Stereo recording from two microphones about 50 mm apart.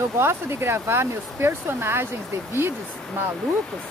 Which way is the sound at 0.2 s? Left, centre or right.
Right.